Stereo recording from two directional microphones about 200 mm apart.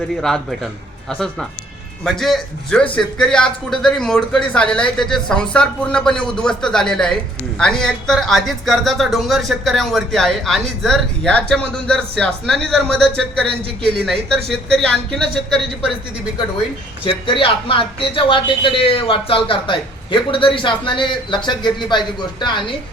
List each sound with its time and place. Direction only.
0.2 s speech: centre (ahead or behind)
2.0 s speech: centre (ahead or behind)
17.0 s speech: 25° left (ahead or behind)